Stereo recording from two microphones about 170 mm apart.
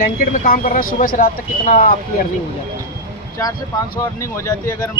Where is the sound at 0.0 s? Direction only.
55° left (ahead or behind).